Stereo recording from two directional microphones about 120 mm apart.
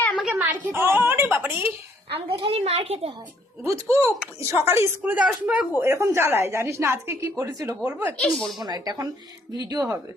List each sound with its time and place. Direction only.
0.3 s a woman's voice: 20° right (ahead or behind)
2.1 s a child's voice: 50° right (ahead or behind)
3.6 s a woman's voice: 20° right (ahead or behind)
5.1 s speech: 10° right (ahead or behind)
5.8 s a woman's voice: 20° right (ahead or behind)
8.2 s speech: 5° left (ahead or behind)
8.5 s speech: 35° right (ahead or behind)